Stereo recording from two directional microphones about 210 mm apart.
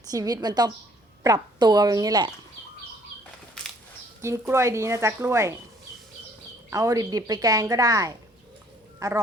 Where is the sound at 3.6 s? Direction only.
5° left (ahead or behind).